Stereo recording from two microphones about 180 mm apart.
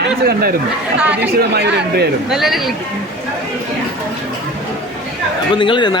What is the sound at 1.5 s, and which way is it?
Speech, 70° right (ahead or behind).